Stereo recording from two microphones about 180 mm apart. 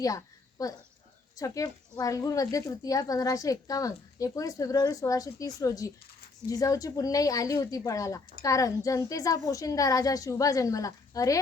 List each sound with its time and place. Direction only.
0.6 s speech: 20° left (ahead or behind)